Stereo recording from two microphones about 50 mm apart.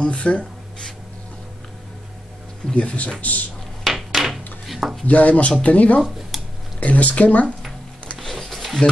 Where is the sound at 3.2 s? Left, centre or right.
Left.